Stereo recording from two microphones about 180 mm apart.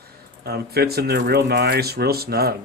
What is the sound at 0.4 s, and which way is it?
Speech, 60° right (ahead or behind).